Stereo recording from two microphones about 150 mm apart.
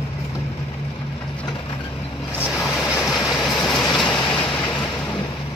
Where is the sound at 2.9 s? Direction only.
Centre (ahead or behind).